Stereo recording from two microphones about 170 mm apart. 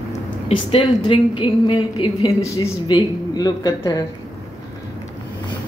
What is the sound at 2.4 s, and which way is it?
Speech, 20° left (ahead or behind).